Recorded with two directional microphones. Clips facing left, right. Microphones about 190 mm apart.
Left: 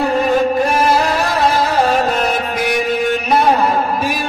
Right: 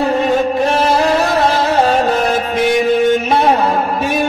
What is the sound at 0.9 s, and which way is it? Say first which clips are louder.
Music: right 3 dB; 25° right (ahead or behind).